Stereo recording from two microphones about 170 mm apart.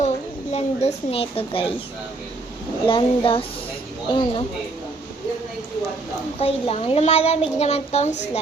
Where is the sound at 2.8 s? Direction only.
30° left (ahead or behind).